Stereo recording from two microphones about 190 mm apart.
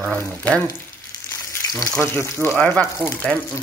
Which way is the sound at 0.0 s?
5° left (ahead or behind).